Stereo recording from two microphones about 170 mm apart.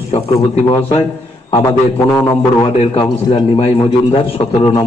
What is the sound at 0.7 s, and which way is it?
Speech, 30° left (ahead or behind).